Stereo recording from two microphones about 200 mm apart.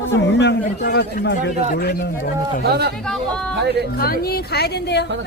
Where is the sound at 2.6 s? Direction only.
55° right (ahead or behind).